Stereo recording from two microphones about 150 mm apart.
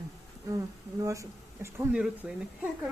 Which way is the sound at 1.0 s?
20° right (ahead or behind).